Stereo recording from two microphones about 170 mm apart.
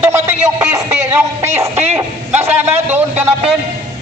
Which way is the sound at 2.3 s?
40° right (ahead or behind).